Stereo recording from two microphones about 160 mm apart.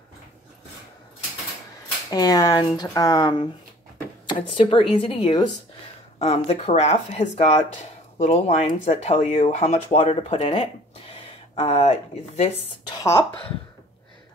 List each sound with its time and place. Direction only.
2.0 s a woman's voice: 20° left (ahead or behind)
6.1 s speech: 45° left (ahead or behind)
12.9 s speech: 20° left (ahead or behind)